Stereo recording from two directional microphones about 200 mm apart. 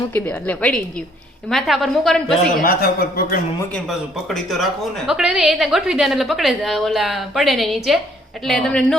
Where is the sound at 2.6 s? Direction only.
50° left (ahead or behind).